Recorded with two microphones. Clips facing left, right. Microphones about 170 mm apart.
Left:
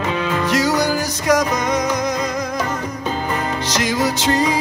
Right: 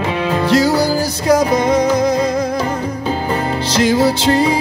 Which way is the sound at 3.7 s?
30° right (ahead or behind).